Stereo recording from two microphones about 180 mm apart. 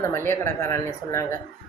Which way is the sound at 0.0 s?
15° left (ahead or behind).